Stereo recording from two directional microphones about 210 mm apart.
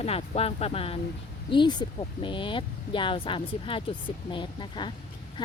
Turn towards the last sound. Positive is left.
turn(degrees=20)  # may be behind; listen again after turning